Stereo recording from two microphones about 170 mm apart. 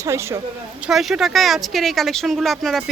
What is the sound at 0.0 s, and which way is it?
Speech, 15° right (ahead or behind).